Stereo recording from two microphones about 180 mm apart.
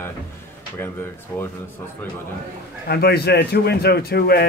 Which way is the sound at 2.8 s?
60° left (ahead or behind).